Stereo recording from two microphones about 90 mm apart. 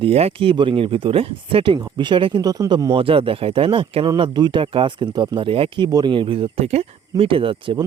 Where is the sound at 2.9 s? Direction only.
90° right.